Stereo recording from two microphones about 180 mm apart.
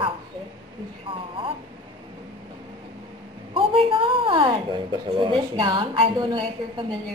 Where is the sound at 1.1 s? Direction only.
30° right (ahead or behind).